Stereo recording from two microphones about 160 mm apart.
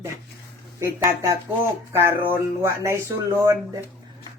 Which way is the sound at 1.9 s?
15° right (ahead or behind).